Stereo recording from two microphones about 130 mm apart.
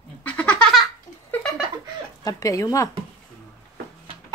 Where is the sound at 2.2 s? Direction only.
25° left (ahead or behind).